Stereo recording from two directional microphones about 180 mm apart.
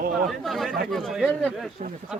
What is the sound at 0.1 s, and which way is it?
Speech, centre (ahead or behind).